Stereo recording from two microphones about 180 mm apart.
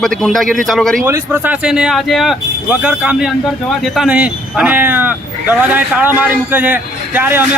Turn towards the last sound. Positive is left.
turn(degrees=-10)  # may be behind; listen again after turning